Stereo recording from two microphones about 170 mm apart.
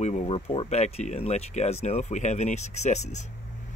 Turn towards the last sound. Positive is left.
turn(degrees=40)  # may be behind; listen again after turning